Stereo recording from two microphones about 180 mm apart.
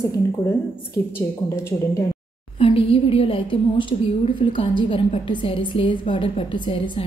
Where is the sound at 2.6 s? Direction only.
30° left (ahead or behind).